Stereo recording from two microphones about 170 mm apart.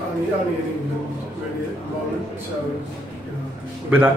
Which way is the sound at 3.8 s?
10° right (ahead or behind).